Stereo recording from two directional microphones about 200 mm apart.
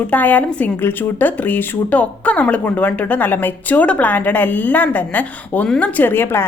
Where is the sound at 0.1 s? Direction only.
10° left (ahead or behind).